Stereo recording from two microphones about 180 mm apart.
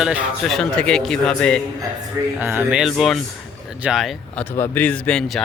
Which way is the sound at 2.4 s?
10° right (ahead or behind).